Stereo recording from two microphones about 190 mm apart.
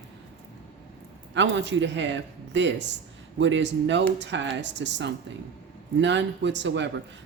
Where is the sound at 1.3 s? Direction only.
70° right (ahead or behind).